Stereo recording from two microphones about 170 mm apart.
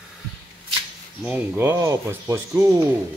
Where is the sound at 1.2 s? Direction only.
10° right (ahead or behind).